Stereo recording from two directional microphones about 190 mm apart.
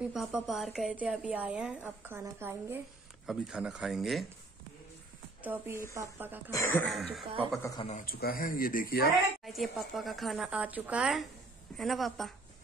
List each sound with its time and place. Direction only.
0.0 s a woman's voice: 5° right (ahead or behind)
5.4 s speech: 10° right (ahead or behind)
6.5 s speech: 10° left (ahead or behind)
7.8 s speech: 45° left (ahead or behind)
9.4 s a woman's voice: centre (ahead or behind)